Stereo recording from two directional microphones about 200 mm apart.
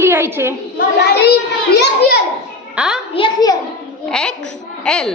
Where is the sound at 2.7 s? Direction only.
5° right (ahead or behind).